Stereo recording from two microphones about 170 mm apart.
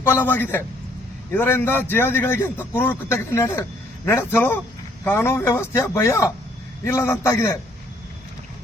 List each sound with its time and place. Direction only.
0.0 s a man's voice: 10° left (ahead or behind)